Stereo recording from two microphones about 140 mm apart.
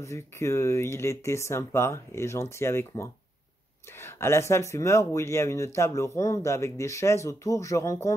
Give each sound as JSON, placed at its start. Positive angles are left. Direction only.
{"t": 0.0, "sound": "speech", "side_deg": 20}